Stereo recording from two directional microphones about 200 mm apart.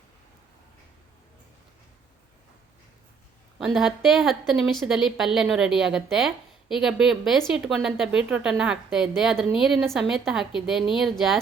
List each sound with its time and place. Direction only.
3.6 s a woman's voice: 5° right (ahead or behind)